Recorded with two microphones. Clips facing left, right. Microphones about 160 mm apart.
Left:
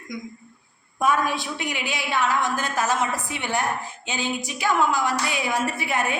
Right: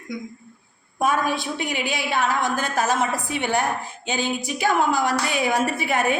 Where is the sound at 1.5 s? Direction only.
45° right (ahead or behind).